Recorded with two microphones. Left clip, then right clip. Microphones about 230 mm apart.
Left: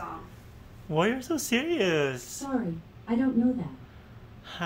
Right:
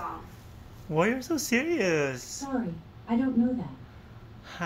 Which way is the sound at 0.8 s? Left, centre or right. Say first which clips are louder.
Even; centre.